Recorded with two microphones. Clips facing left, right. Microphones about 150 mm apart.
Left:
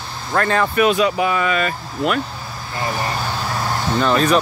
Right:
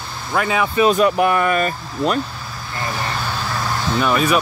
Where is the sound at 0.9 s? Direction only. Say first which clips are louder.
Right 2 dB; 50° right (ahead or behind).